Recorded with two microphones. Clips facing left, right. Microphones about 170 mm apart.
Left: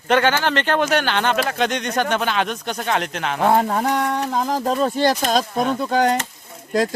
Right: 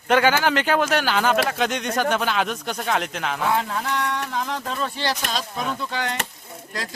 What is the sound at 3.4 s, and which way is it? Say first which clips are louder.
Speech: left 8 dB; 50° left (ahead or behind).